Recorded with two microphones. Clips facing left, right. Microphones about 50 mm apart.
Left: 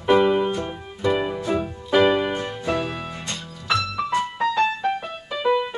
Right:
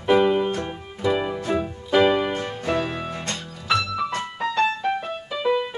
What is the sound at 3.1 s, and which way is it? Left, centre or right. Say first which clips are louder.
Music: right 2 dB; right.